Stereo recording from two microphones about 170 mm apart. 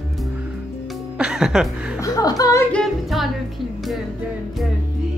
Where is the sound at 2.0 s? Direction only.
20° left (ahead or behind).